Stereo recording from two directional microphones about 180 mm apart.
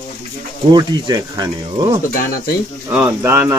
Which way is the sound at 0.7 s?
25° right (ahead or behind).